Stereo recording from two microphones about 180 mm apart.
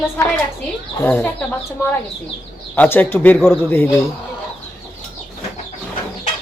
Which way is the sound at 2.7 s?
10° left (ahead or behind).